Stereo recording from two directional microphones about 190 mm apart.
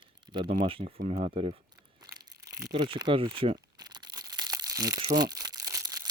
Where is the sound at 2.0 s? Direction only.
20° right (ahead or behind).